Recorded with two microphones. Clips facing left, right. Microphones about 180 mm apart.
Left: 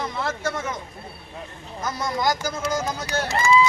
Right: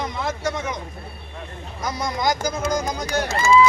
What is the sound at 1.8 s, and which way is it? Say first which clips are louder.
Speech: right 1 dB; 15° right (ahead or behind).